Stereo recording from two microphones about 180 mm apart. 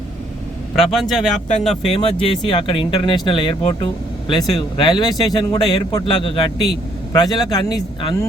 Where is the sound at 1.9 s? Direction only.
30° left (ahead or behind).